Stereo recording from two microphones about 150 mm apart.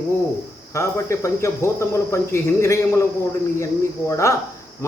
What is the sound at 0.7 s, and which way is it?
Speech, 20° left (ahead or behind).